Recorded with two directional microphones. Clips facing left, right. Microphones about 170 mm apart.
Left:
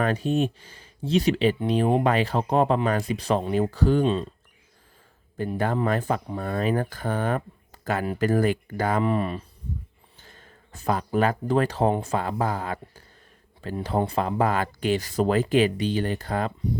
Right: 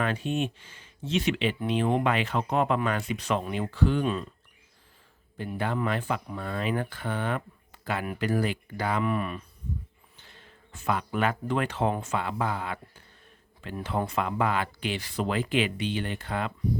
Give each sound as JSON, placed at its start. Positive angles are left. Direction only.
{"t": 0.0, "sound": "speech", "side_deg": 40}
{"t": 4.0, "sound": "speech", "side_deg": 25}
{"t": 5.5, "sound": "speech", "side_deg": 40}
{"t": 9.0, "sound": "speech", "side_deg": 30}
{"t": 10.2, "sound": "speech", "side_deg": 45}